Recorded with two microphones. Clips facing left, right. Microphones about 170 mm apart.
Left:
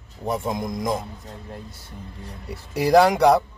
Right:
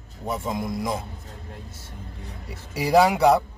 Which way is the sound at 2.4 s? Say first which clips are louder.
Left 5 dB; 5° right (ahead or behind).